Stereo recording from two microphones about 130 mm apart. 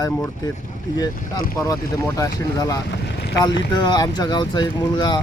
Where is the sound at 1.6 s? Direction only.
25° left (ahead or behind).